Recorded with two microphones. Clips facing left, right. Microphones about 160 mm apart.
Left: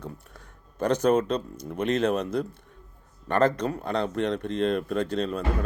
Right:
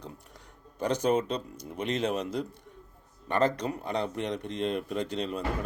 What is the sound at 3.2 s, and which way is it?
Speech, 55° left (ahead or behind).